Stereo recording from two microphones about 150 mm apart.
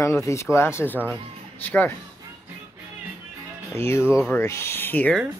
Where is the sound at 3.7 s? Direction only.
15° left (ahead or behind).